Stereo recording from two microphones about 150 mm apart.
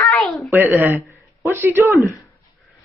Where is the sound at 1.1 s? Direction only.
20° left (ahead or behind).